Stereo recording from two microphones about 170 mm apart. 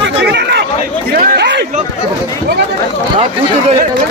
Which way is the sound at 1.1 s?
70° right (ahead or behind).